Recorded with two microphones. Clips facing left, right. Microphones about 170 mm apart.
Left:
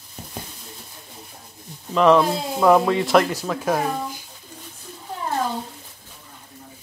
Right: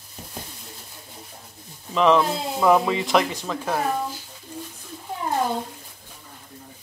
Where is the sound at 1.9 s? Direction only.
Centre (ahead or behind).